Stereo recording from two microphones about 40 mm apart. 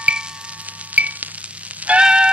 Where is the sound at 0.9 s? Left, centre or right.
Right.